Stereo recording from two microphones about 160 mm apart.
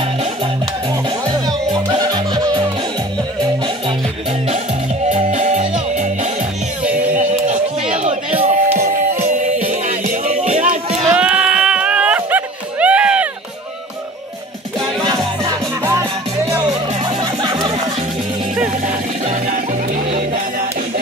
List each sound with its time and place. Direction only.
0.0 s music: 35° right (ahead or behind)
5.1 s music: 45° right (ahead or behind)
7.9 s a sound: 45° right (ahead or behind)
8.7 s music: 50° right (ahead or behind)
11.1 s music: 5° right (ahead or behind)
15.0 s music: 25° right (ahead or behind)
20.1 s music: 45° right (ahead or behind)